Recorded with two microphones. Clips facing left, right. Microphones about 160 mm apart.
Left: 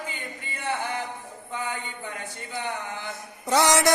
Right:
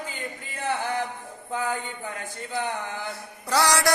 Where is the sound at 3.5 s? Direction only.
20° left (ahead or behind).